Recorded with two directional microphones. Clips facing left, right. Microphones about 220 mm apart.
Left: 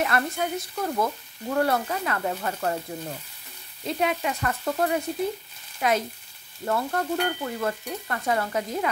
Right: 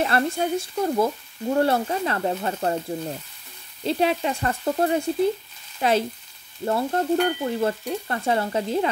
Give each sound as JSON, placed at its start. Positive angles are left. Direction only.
{"t": 0.0, "sound": "frying", "side_deg": -30}
{"t": 3.8, "sound": "frying", "side_deg": -30}